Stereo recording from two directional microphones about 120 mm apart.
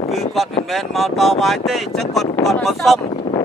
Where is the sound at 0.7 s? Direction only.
Centre (ahead or behind).